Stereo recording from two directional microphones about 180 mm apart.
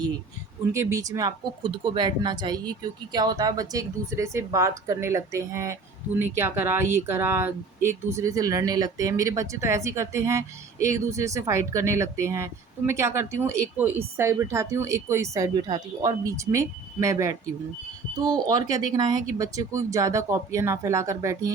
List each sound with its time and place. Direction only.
0.7 s speech: 15° right (ahead or behind)